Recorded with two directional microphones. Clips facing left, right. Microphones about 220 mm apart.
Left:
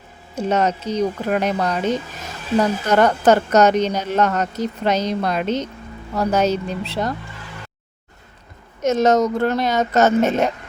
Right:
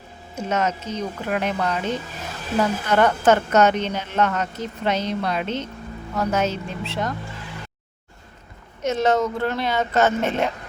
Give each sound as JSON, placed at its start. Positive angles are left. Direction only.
{"t": 0.3, "sound": "a woman's voice", "side_deg": 35}
{"t": 2.8, "sound": "a woman's voice", "side_deg": 40}
{"t": 8.8, "sound": "a woman's voice", "side_deg": 45}